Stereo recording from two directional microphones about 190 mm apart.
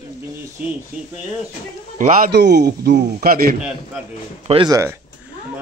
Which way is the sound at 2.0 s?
40° right (ahead or behind).